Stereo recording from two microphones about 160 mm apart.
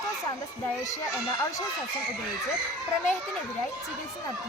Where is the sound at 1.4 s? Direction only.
20° left (ahead or behind).